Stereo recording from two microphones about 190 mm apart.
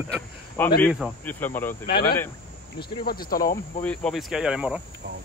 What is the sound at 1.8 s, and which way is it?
Speech, 55° left (ahead or behind).